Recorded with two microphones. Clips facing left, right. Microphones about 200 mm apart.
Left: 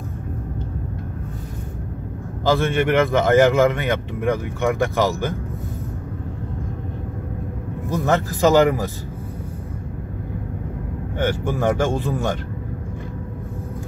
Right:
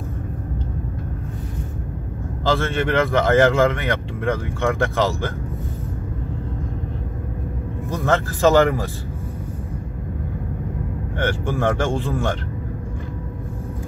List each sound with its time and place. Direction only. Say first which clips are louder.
2.5 s a man's voice: left 2 dB; 15° left (ahead or behind)
7.9 s a man's voice: left 1 dB; 15° left (ahead or behind)
11.2 s a man's voice: left 1 dB; 15° left (ahead or behind)